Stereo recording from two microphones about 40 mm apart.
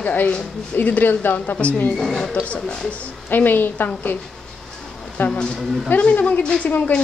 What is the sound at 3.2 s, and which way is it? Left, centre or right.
Speech, left.